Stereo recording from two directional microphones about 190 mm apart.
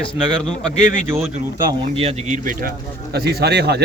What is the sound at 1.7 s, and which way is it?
Speech, 30° right (ahead or behind).